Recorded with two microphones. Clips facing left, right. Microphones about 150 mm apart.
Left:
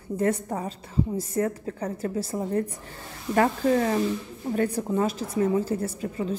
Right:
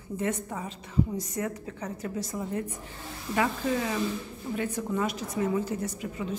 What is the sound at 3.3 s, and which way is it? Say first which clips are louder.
A woman's voice: left 6 dB; 45° left (ahead or behind).